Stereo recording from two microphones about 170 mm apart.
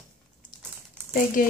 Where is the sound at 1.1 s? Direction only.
55° left (ahead or behind).